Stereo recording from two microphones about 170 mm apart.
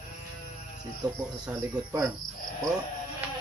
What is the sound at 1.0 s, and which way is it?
Speech, 25° right (ahead or behind).